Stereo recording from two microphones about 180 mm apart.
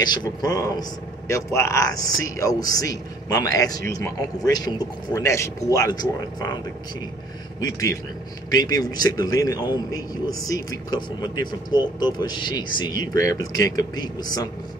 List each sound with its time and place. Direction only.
0.0 s a man's voice: 25° left (ahead or behind)
8.5 s a man's voice: 20° left (ahead or behind)